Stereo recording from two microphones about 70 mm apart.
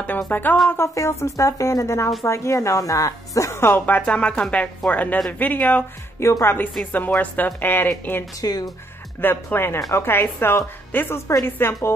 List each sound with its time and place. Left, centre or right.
0.3 s speech: left
0.9 s speech: left
4.0 s a woman's voice: centre
8.4 s speech: left
9.2 s a woman's voice: left